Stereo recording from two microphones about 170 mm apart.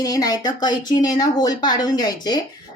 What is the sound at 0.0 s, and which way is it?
Speech, 25° left (ahead or behind).